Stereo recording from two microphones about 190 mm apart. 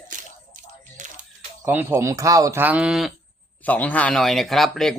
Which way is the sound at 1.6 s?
10° right (ahead or behind).